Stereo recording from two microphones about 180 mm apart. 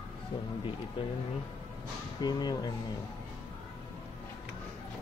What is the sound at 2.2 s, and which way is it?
Speech, 20° left (ahead or behind).